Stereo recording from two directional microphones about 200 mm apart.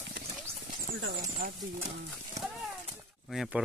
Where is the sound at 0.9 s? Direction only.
70° right (ahead or behind).